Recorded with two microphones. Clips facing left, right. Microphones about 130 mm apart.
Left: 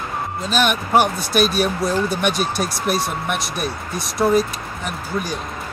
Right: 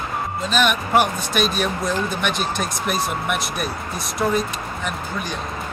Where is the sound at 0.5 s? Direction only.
Centre (ahead or behind).